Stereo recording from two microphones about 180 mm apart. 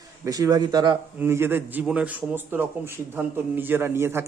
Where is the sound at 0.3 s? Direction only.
20° right (ahead or behind).